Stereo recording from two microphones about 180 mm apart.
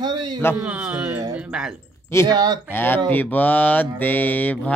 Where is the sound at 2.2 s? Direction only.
20° right (ahead or behind).